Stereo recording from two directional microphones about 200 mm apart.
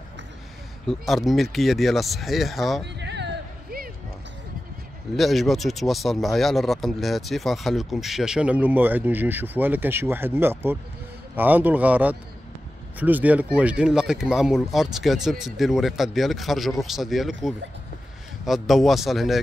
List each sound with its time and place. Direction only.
0.8 s speech: centre (ahead or behind)
3.0 s a sound: 60° right (ahead or behind)
5.1 s speech: centre (ahead or behind)